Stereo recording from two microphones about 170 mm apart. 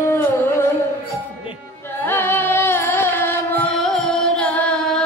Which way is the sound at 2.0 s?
10° left (ahead or behind).